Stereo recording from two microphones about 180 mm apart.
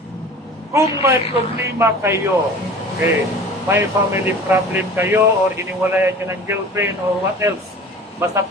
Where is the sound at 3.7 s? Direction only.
10° right (ahead or behind).